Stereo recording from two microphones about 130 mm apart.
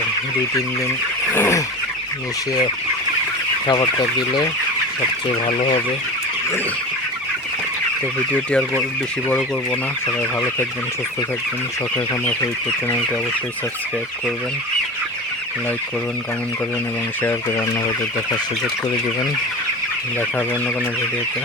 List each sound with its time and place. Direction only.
1.3 s fowl: 20° left (ahead or behind)
3.7 s speech: 30° left (ahead or behind)